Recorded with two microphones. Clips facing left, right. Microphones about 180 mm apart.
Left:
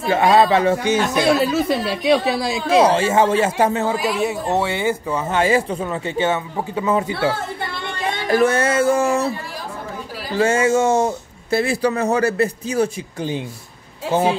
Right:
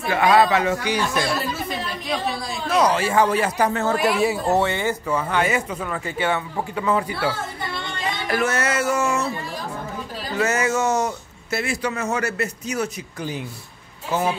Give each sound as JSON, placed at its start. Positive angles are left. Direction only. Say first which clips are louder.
{"t": 0.0, "sound": "speech", "louder": "left 3 dB", "side_deg": 25}
{"t": 1.5, "sound": "a woman's voice", "louder": "left 9 dB", "side_deg": 80}
{"t": 2.8, "sound": "speech", "louder": "left 2 dB", "side_deg": 25}
{"t": 3.9, "sound": "speech", "louder": "right 1 dB", "side_deg": 0}
{"t": 4.6, "sound": "speech", "louder": "left 2 dB", "side_deg": 15}
{"t": 10.3, "sound": "speech", "louder": "left 5 dB", "side_deg": 30}